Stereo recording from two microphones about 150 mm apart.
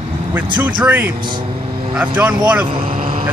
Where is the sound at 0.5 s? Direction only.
10° right (ahead or behind).